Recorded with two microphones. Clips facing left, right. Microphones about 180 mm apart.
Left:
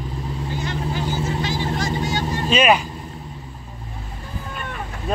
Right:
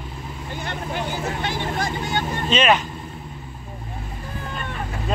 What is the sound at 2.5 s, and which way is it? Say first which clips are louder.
Speech: left 2 dB; 10° left (ahead or behind).